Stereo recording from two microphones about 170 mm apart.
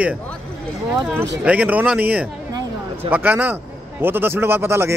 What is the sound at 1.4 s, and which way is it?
Speech, 10° right (ahead or behind).